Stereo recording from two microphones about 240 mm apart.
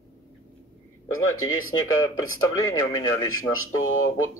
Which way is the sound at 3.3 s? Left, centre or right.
Left.